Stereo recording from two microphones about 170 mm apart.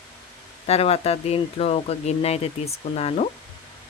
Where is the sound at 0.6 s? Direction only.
35° left (ahead or behind).